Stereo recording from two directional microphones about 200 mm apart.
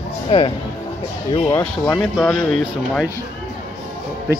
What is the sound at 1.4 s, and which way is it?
Speech, 10° left (ahead or behind).